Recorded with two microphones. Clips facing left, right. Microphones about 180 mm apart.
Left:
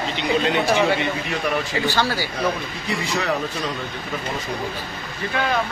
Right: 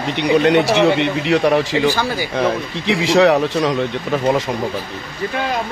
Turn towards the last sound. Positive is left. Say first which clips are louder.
# right 11 dB
turn(degrees=-80)